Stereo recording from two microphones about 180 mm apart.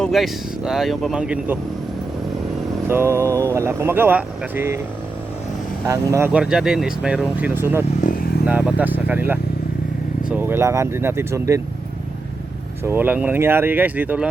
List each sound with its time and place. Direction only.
0.0 s speech: centre (ahead or behind)
2.8 s speech: 15° right (ahead or behind)
5.8 s speech: 15° right (ahead or behind)
8.0 s vehicle: 55° left (ahead or behind)
8.4 s speech: 10° right (ahead or behind)
12.8 s speech: 10° right (ahead or behind)